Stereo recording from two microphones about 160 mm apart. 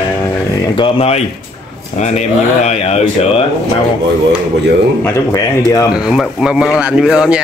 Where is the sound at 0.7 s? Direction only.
35° left (ahead or behind).